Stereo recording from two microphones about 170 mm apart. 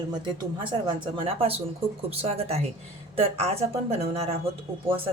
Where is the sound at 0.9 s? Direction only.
30° right (ahead or behind).